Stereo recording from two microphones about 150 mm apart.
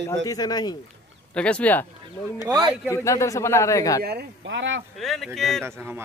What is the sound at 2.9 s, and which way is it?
A man's voice, 20° left (ahead or behind).